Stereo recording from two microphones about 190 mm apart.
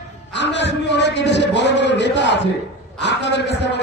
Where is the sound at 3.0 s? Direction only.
65° left (ahead or behind).